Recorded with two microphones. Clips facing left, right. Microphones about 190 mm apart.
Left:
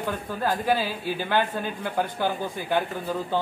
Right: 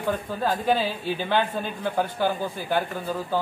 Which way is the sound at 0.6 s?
10° left (ahead or behind).